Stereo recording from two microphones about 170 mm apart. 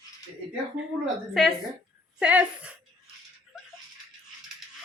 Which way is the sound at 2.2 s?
5° right (ahead or behind).